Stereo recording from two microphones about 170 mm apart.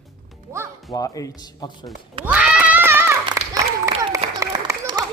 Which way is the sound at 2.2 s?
5° right (ahead or behind).